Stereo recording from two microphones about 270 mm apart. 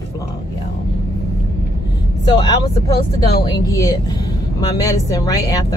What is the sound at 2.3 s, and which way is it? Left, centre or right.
Speech, centre.